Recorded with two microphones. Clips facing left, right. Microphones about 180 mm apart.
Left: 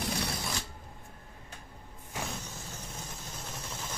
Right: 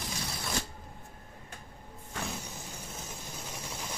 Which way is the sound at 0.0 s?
65° left (ahead or behind).